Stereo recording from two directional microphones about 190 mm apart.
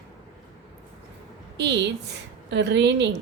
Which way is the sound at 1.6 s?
65° right (ahead or behind).